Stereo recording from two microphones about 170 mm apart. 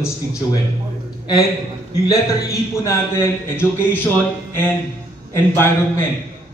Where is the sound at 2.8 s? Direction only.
15° left (ahead or behind).